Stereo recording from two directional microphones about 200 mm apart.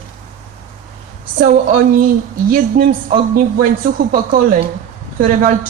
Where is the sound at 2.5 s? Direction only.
45° right (ahead or behind).